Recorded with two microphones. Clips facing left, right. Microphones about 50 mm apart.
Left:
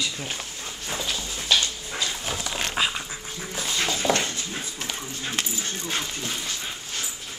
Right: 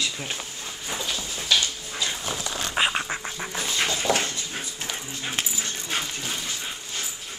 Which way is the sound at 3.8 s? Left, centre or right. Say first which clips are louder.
Right 1 dB; centre.